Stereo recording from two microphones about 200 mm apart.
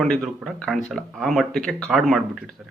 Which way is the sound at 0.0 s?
Centre (ahead or behind).